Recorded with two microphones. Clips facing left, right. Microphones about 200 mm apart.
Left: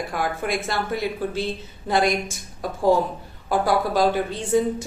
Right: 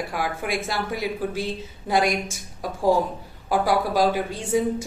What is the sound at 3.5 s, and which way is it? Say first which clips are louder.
A woman's voice: left 1 dB; 10° right (ahead or behind).